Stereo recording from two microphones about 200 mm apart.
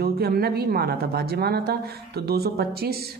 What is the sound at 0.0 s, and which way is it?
A man's voice, 50° right (ahead or behind).